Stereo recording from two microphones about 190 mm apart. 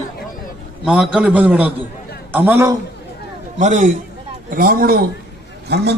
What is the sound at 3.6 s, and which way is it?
A man's voice, 40° right (ahead or behind).